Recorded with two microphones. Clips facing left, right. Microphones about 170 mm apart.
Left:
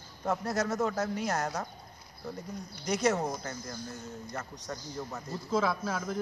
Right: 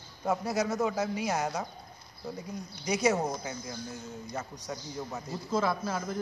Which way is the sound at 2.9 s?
10° right (ahead or behind).